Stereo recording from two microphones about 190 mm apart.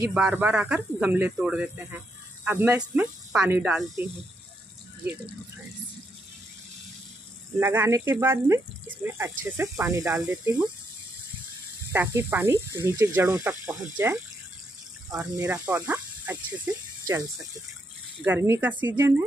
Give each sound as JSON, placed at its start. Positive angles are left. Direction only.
{"t": 0.0, "sound": "speech", "side_deg": -5}
{"t": 7.6, "sound": "speech", "side_deg": -15}
{"t": 11.9, "sound": "speech", "side_deg": -15}
{"t": 15.3, "sound": "speech", "side_deg": -10}